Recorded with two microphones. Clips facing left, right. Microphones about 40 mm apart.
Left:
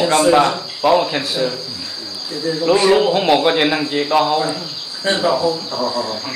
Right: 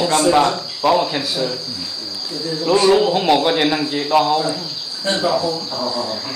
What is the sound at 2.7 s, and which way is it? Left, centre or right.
A man's voice, centre.